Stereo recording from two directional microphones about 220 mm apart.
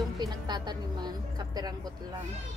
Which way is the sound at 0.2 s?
20° right (ahead or behind).